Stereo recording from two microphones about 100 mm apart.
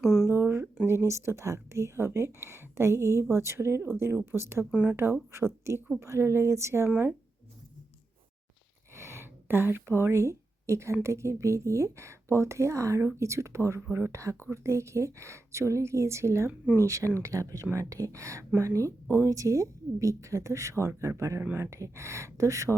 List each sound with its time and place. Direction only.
0.0 s a sound: centre (ahead or behind)
0.3 s a sound: 25° right (ahead or behind)
0.9 s speech: 25° right (ahead or behind)
4.7 s speech: 10° right (ahead or behind)
5.3 s speech: 25° right (ahead or behind)
6.9 s speech: 15° right (ahead or behind)
9.0 s a sound: 25° right (ahead or behind)
11.0 s a woman's voice: 30° right (ahead or behind)
18.7 s speech: 20° left (ahead or behind)
19.3 s a woman's voice: 30° right (ahead or behind)